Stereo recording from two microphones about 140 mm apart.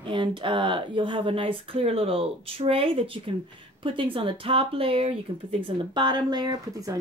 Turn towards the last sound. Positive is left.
turn(degrees=-25)  # may be behind; listen again after turning